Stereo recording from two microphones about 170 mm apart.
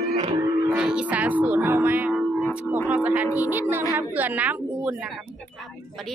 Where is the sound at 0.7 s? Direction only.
5° right (ahead or behind).